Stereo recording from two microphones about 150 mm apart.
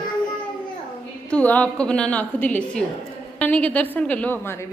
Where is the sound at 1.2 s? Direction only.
10° left (ahead or behind).